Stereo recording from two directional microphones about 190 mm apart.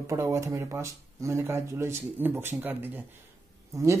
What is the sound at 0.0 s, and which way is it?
Speech, 15° right (ahead or behind).